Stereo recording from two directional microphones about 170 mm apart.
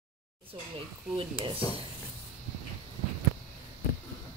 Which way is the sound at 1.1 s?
30° right (ahead or behind).